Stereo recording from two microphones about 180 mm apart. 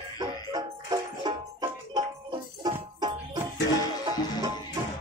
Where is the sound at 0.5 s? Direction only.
20° right (ahead or behind).